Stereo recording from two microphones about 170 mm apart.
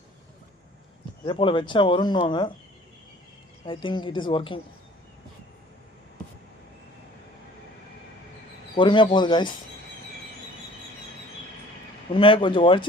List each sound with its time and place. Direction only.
1.2 s speech: 30° left (ahead or behind)
3.7 s speech: 30° left (ahead or behind)
8.7 s speech: 30° left (ahead or behind)
12.1 s speech: 30° left (ahead or behind)